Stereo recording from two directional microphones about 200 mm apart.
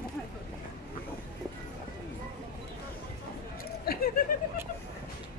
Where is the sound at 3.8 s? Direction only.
45° left (ahead or behind).